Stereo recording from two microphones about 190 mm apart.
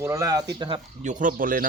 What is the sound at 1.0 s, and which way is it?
Speech, 45° right (ahead or behind).